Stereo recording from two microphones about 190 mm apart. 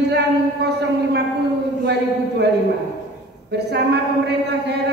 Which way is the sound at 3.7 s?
60° right (ahead or behind).